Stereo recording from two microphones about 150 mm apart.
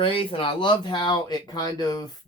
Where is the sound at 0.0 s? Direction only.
35° left (ahead or behind).